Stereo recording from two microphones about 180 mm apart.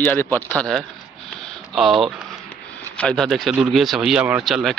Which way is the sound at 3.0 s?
5° left (ahead or behind).